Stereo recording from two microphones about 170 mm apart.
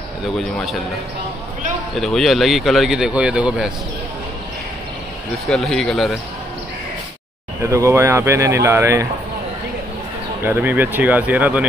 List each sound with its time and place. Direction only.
0.6 s speech: centre (ahead or behind)
2.0 s speech: centre (ahead or behind)
5.3 s speech: centre (ahead or behind)
7.6 s speech: 15° right (ahead or behind)
10.4 s speech: 10° right (ahead or behind)